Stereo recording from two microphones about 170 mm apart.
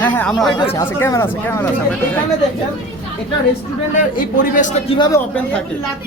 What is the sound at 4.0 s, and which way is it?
Speech, 50° left (ahead or behind).